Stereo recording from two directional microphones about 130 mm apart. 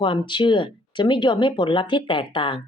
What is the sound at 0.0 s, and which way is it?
Speech, 40° left (ahead or behind).